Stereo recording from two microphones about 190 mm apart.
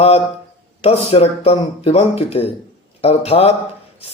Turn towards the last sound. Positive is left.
turn(degrees=30)  # may be behind; listen again after turning